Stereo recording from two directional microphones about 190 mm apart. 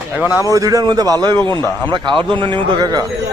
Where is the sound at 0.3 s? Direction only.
20° left (ahead or behind).